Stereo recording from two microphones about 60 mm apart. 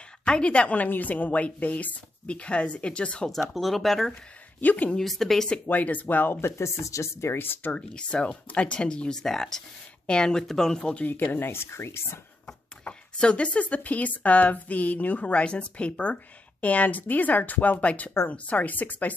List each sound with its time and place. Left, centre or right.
0.2 s speech: centre
3.3 s speech: centre
4.6 s speech: left
4.9 s speech: centre
5.7 s speech: left
6.5 s speech: left
7.3 s speech: left
7.7 s speech: centre
11.1 s speech: left
12.8 s speech: centre